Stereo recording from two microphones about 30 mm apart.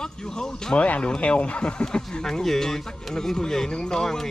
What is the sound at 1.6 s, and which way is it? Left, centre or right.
Speech, left.